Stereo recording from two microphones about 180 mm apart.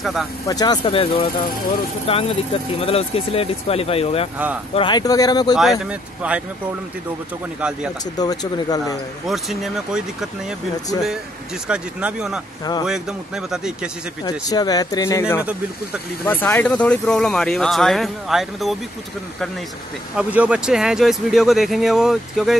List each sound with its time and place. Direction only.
0.0 s speech: centre (ahead or behind)
0.5 s speech: 20° left (ahead or behind)
5.6 s speech: 5° right (ahead or behind)
8.2 s speech: 20° left (ahead or behind)
9.3 s speech: centre (ahead or behind)
11.6 s speech: 5° right (ahead or behind)
14.2 s speech: 20° left (ahead or behind); by 18.8 s centre (ahead or behind)
20.2 s speech: 5° right (ahead or behind)